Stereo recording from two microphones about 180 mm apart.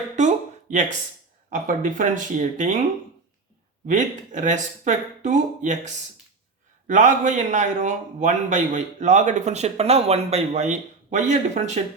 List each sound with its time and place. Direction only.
0.2 s a sound: 40° right (ahead or behind)
1.5 s speech: 50° right (ahead or behind)
3.8 s a man's voice: 45° right (ahead or behind)